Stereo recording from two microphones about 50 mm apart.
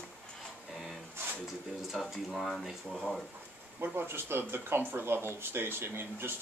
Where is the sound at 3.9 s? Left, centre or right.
Right.